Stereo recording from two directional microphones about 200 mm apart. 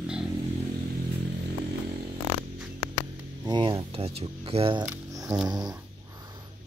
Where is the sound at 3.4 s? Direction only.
25° right (ahead or behind).